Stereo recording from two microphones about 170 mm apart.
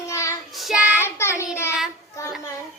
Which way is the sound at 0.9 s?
15° left (ahead or behind).